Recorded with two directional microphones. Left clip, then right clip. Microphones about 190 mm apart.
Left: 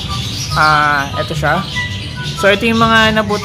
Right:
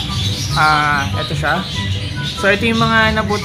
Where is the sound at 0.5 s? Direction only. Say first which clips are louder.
Left 3 dB; 30° left (ahead or behind).